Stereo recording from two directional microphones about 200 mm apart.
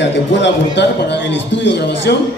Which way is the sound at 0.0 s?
60° left (ahead or behind).